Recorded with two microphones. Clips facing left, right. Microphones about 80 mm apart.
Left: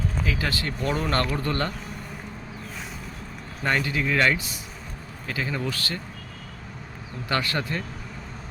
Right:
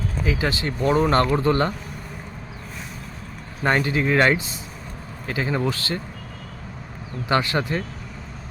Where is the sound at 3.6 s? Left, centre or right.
Right.